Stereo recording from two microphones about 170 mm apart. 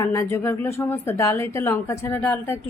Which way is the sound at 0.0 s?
20° left (ahead or behind).